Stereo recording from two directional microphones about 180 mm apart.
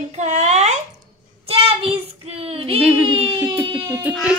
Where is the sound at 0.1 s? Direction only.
40° right (ahead or behind).